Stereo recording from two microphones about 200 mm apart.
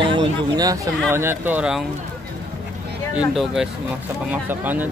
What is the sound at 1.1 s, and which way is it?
Speech, 10° right (ahead or behind).